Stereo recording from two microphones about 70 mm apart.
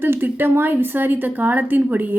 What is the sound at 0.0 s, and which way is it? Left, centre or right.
Speech, right.